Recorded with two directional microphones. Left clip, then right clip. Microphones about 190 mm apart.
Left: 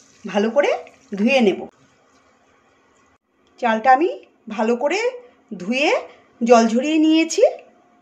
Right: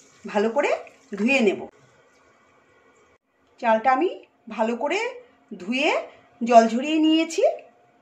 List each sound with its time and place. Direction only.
0.3 s speech: 30° left (ahead or behind)
3.5 s a woman's voice: 35° left (ahead or behind)